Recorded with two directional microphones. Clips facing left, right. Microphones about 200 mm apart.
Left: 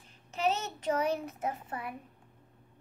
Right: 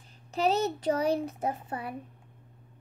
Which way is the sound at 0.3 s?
35° right (ahead or behind).